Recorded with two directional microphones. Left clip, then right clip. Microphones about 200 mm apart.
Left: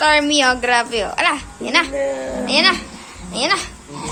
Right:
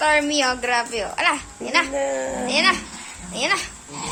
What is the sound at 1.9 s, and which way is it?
Speech, 40° right (ahead or behind).